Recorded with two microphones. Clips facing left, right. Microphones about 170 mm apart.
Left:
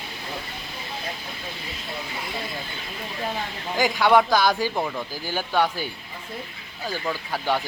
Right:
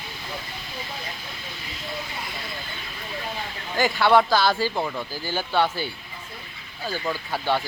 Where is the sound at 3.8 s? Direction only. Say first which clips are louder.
Even; 15° left (ahead or behind).